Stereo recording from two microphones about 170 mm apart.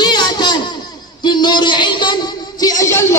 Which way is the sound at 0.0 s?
25° left (ahead or behind).